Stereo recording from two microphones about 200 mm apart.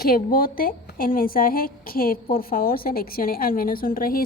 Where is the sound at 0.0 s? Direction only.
45° left (ahead or behind).